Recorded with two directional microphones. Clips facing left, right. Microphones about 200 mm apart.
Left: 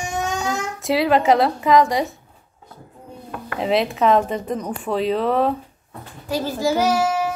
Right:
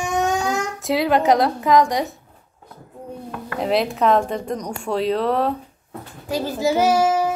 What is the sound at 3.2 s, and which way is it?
A woman's voice, centre (ahead or behind).